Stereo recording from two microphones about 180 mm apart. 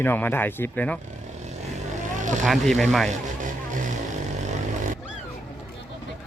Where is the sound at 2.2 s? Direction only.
45° right (ahead or behind).